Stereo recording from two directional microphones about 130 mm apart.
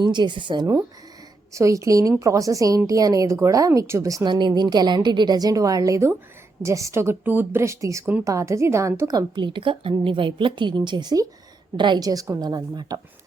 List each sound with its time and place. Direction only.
0.0 s a woman's voice: 35° right (ahead or behind)
1.5 s a woman's voice: 25° right (ahead or behind)